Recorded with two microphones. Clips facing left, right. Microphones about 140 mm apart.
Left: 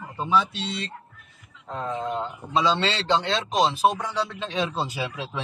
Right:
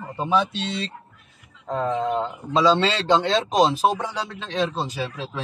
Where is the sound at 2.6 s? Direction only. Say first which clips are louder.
Right 5 dB; 40° right (ahead or behind).